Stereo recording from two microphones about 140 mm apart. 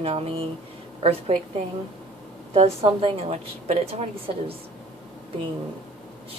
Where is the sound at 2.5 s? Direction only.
45° right (ahead or behind).